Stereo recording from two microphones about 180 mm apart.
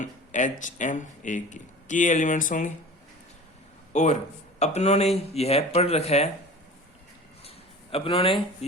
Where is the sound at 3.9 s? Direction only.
40° left (ahead or behind).